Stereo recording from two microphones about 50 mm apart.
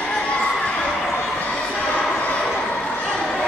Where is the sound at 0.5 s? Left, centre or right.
Centre.